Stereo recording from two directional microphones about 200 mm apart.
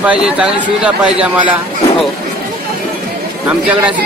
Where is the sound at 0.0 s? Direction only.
5° right (ahead or behind).